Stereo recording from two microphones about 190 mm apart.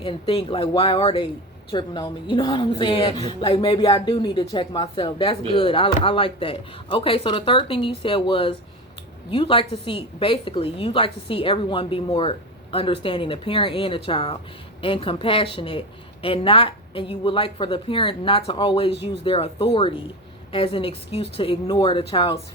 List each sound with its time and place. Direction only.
0.0 s a woman's voice: 25° left (ahead or behind)